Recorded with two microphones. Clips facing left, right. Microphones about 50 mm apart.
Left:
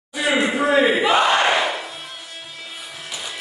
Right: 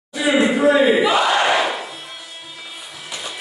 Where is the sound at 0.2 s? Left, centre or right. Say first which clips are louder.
Right 4 dB; centre.